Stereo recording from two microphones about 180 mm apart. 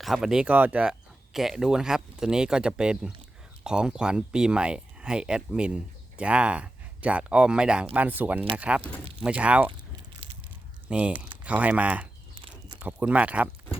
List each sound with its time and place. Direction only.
0.0 s speech: centre (ahead or behind)
9.6 s biting: 30° right (ahead or behind)
10.8 s speech: 5° right (ahead or behind)
12.3 s a sound: 30° right (ahead or behind)
12.8 s speech: 10° right (ahead or behind)